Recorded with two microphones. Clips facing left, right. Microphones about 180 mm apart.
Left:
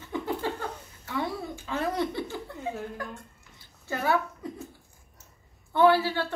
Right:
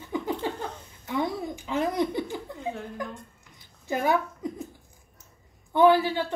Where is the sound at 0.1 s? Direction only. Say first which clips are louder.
Right 1 dB; 15° right (ahead or behind).